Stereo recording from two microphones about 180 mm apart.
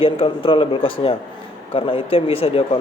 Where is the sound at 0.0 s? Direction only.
30° left (ahead or behind).